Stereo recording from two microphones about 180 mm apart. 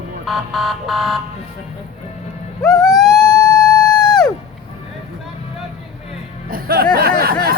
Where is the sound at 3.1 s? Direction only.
20° left (ahead or behind).